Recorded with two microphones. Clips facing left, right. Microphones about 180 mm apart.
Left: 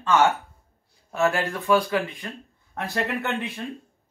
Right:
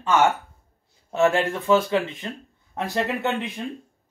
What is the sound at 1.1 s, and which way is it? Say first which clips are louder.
Speech: right 3 dB; 20° right (ahead or behind).